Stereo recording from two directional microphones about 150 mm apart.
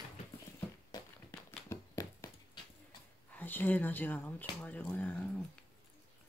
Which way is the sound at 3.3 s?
10° left (ahead or behind).